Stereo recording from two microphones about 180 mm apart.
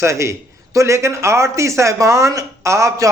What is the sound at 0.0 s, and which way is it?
A man's voice, 15° right (ahead or behind).